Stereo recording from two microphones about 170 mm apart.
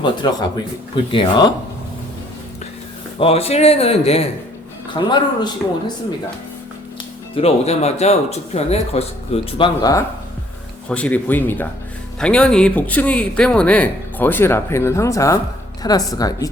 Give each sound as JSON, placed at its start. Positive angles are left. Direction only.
{"t": 0.0, "sound": "a woman's voice", "side_deg": 25}
{"t": 3.2, "sound": "speech", "side_deg": 35}
{"t": 4.9, "sound": "a woman's voice", "side_deg": 25}
{"t": 7.3, "sound": "speech", "side_deg": 35}
{"t": 10.8, "sound": "a man's voice", "side_deg": 5}